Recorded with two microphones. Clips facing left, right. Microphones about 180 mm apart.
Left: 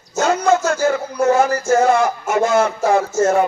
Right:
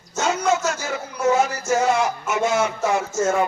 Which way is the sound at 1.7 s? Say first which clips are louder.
Left 5 dB; 55° left (ahead or behind).